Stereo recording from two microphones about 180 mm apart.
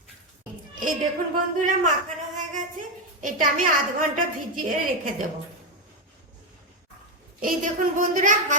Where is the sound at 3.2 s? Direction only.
45° right (ahead or behind).